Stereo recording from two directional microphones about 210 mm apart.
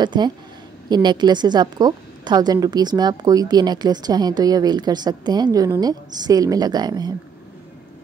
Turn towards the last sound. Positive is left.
turn(degrees=-20)  # may be behind; listen again after turning